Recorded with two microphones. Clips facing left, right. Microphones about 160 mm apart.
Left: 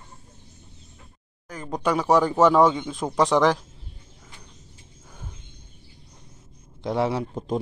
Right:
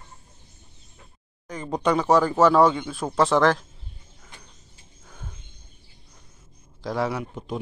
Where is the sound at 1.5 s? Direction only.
Centre (ahead or behind).